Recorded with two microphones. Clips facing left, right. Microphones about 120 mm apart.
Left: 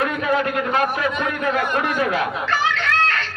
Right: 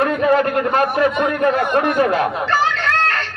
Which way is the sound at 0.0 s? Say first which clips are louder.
Right 5 dB; 45° right (ahead or behind).